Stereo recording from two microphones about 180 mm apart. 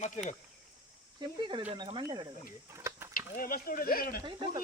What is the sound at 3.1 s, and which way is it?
Speech, 55° left (ahead or behind).